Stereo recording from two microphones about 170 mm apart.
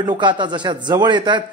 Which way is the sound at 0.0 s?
25° right (ahead or behind).